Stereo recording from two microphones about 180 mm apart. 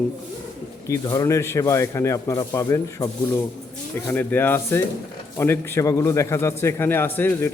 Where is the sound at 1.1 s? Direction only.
20° left (ahead or behind).